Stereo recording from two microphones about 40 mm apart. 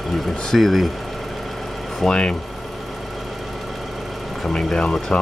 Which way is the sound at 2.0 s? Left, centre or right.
Left.